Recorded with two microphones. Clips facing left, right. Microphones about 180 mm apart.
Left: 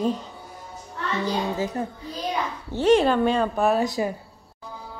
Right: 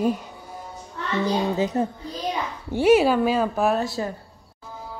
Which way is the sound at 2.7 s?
10° right (ahead or behind).